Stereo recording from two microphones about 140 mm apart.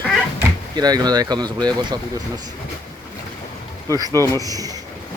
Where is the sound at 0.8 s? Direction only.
30° right (ahead or behind).